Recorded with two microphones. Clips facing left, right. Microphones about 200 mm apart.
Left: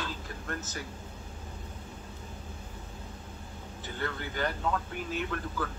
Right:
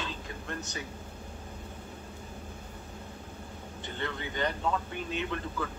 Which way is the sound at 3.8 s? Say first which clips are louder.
Even; 5° left (ahead or behind).